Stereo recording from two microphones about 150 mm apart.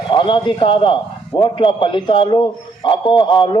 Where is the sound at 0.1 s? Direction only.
35° left (ahead or behind).